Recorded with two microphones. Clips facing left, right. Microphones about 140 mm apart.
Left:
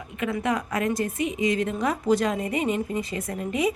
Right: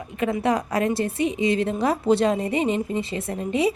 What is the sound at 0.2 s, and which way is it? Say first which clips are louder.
A woman's voice: right 4 dB; 35° right (ahead or behind).